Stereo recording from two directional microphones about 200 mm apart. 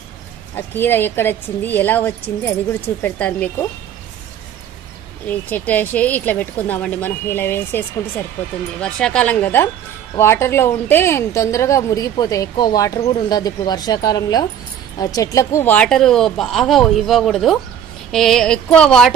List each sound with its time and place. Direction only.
0.6 s a woman's voice: 10° left (ahead or behind)
5.2 s a woman's voice: 10° left (ahead or behind)
8.8 s a woman's voice: 5° left (ahead or behind)